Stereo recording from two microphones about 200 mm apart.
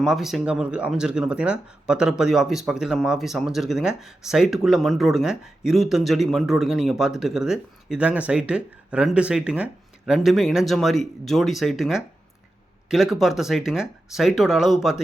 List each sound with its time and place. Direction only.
0.0 s speech: centre (ahead or behind)